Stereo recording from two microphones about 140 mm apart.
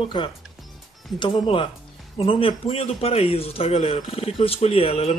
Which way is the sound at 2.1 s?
40° left (ahead or behind).